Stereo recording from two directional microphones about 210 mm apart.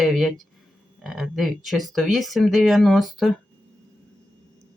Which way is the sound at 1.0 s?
Centre (ahead or behind).